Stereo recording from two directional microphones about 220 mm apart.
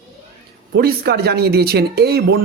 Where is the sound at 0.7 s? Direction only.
45° right (ahead or behind).